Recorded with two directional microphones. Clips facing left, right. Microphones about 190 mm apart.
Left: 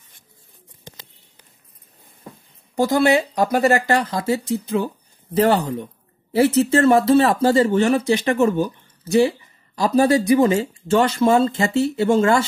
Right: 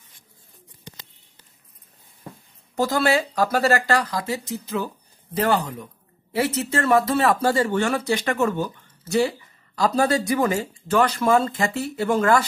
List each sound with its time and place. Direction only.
2.7 s speech: 15° left (ahead or behind)